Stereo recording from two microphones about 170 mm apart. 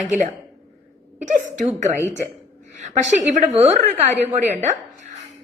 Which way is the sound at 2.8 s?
45° right (ahead or behind).